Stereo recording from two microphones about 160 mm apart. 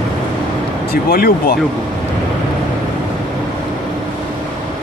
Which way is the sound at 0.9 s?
70° left (ahead or behind).